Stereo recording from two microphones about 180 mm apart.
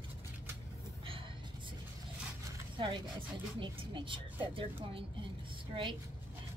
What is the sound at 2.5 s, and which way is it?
Speech, 25° right (ahead or behind).